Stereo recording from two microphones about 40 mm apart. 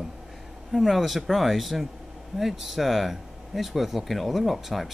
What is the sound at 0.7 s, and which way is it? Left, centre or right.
Speech, centre.